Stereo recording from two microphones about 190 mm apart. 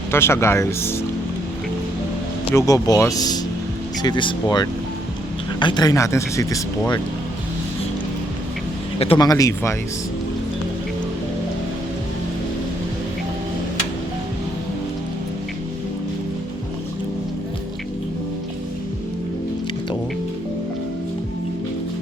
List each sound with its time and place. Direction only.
0.1 s speech: 15° left (ahead or behind)
2.5 s speech: 15° left (ahead or behind)
9.0 s speech: 25° left (ahead or behind)